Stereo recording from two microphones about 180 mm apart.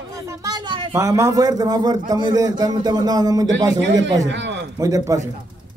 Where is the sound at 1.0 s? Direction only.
15° right (ahead or behind).